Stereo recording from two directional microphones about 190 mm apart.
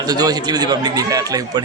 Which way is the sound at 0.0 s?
20° right (ahead or behind).